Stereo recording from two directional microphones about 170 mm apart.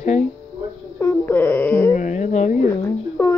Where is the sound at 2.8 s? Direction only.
15° left (ahead or behind).